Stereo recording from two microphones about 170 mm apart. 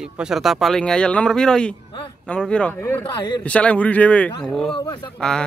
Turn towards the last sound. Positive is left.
turn(degrees=5)  # may be behind; listen again after turning